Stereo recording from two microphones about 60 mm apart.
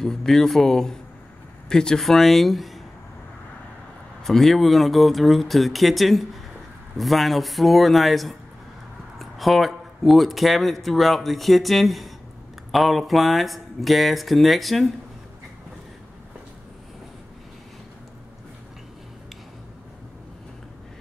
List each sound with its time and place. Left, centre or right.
0.0 s speech: centre
4.2 s speech: centre